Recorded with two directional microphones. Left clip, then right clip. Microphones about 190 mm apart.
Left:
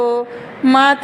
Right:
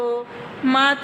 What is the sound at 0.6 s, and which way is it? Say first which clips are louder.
Speech: left 6 dB; 30° left (ahead or behind).